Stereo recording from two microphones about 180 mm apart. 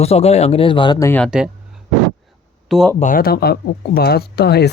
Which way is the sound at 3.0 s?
50° left (ahead or behind).